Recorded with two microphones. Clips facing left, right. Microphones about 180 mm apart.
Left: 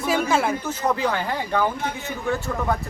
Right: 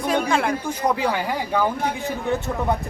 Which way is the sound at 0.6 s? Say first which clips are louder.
Right 1 dB; 10° right (ahead or behind).